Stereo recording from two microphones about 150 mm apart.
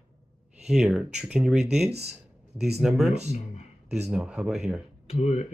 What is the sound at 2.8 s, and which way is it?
Speech, centre (ahead or behind).